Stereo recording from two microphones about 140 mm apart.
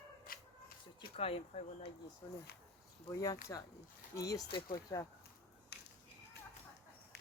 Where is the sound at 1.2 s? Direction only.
45° left (ahead or behind).